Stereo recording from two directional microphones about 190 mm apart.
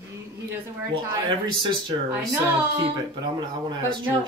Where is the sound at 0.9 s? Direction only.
25° right (ahead or behind).